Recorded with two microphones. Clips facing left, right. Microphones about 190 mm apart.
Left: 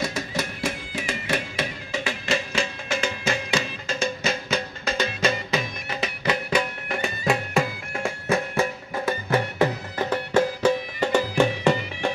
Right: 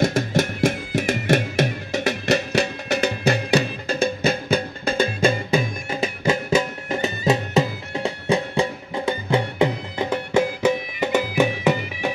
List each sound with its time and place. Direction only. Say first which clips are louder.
0.0 s music: right 8 dB; 50° right (ahead or behind)
6.9 s music: right 5 dB; 20° right (ahead or behind)